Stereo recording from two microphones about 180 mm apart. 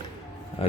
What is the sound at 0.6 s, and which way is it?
Speech, 35° left (ahead or behind).